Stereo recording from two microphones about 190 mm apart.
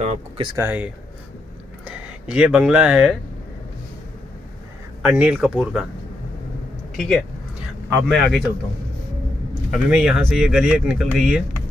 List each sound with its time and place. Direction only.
0.0 s speech: 35° right (ahead or behind)
0.6 s speech: 10° right (ahead or behind)
5.0 s speech: 5° right (ahead or behind)
8.1 s speech: centre (ahead or behind)
9.7 s speech: 5° right (ahead or behind)